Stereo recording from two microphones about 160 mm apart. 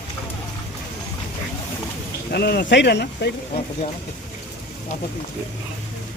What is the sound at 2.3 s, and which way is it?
Speech, 90° left.